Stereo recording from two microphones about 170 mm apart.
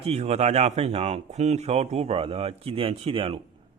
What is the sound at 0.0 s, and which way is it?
A man's voice, 40° right (ahead or behind).